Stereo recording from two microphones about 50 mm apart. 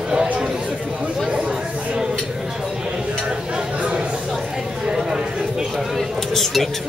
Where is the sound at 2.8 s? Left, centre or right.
Centre.